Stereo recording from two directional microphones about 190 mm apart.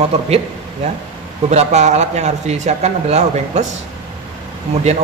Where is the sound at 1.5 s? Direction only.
35° right (ahead or behind).